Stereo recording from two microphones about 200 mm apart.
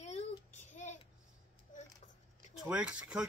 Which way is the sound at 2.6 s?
5° right (ahead or behind).